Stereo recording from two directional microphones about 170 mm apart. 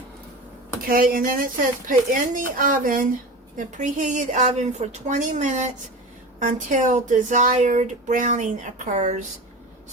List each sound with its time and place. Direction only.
0.9 s speech: 55° right (ahead or behind)